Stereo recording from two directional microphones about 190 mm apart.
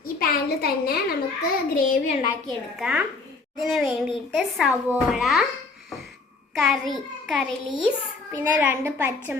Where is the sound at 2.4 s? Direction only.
5° right (ahead or behind).